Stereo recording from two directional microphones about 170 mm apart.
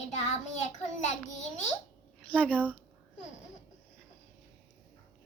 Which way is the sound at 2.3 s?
5° left (ahead or behind).